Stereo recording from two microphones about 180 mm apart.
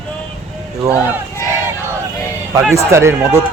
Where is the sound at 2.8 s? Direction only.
15° right (ahead or behind).